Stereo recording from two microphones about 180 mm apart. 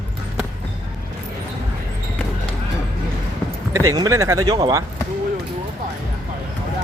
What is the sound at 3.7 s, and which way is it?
Speech, 15° right (ahead or behind).